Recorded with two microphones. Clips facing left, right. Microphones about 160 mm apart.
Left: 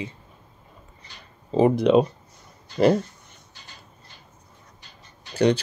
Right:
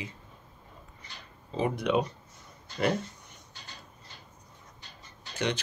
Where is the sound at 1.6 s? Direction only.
30° left (ahead or behind).